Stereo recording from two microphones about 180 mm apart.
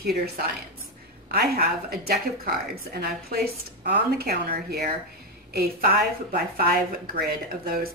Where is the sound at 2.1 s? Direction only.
60° right (ahead or behind).